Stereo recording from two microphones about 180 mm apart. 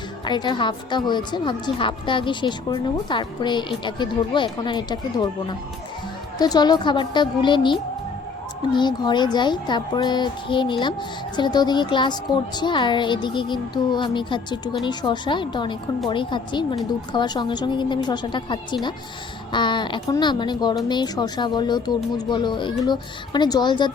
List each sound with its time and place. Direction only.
0.3 s speech: 25° left (ahead or behind)
6.4 s speech: 20° left (ahead or behind)